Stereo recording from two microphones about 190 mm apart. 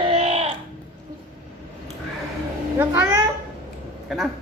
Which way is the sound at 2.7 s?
10° right (ahead or behind).